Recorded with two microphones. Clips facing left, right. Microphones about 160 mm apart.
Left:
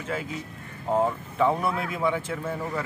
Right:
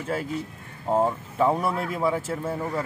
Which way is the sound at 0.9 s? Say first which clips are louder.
Right 1 dB; 15° right (ahead or behind).